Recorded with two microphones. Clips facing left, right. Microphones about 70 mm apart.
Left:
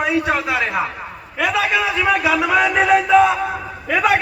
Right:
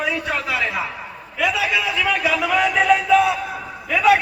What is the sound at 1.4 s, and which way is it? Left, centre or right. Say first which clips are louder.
Speech: left 2 dB; left.